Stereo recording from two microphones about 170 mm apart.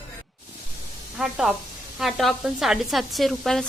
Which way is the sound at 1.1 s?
Centre (ahead or behind).